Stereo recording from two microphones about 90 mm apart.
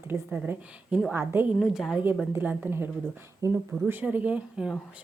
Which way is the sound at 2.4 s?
20° right (ahead or behind).